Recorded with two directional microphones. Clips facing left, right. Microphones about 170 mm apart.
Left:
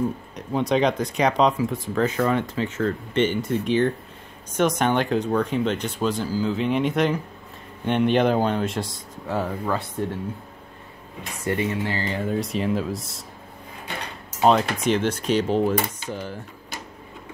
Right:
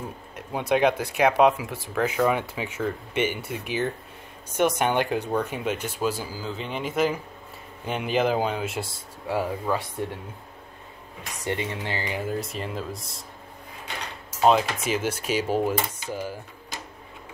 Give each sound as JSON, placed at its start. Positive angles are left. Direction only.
{"t": 0.5, "sound": "speech", "side_deg": -10}
{"t": 11.4, "sound": "speech", "side_deg": -20}
{"t": 12.3, "sound": "speech", "side_deg": 0}
{"t": 14.4, "sound": "speech", "side_deg": -5}